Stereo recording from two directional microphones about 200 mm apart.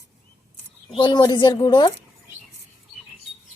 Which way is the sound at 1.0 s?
20° left (ahead or behind).